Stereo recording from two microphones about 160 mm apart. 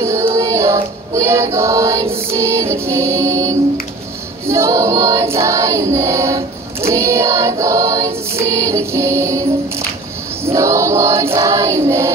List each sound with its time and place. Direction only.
0.0 s choir: 20° right (ahead or behind)
2.3 s music: 15° right (ahead or behind)
4.5 s choir: 20° right (ahead or behind)
6.9 s music: 15° right (ahead or behind)
10.4 s choir: 20° right (ahead or behind)